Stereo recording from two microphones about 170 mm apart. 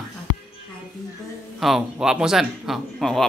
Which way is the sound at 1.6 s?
5° right (ahead or behind).